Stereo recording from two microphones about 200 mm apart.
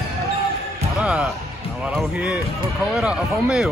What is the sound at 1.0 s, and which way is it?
Speech, 5° right (ahead or behind).